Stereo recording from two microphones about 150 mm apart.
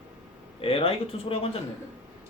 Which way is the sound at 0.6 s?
40° left (ahead or behind).